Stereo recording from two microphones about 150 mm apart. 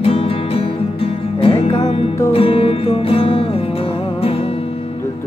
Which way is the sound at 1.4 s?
40° left (ahead or behind).